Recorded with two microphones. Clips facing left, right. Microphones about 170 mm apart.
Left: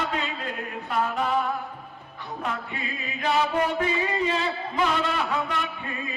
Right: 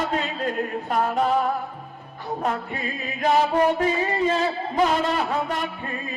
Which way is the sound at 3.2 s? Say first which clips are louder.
Right 4 dB; 40° right (ahead or behind).